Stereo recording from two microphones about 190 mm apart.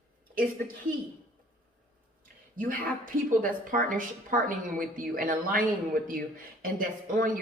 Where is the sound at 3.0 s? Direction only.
45° right (ahead or behind).